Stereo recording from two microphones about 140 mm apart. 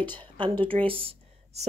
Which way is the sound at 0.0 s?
10° left (ahead or behind).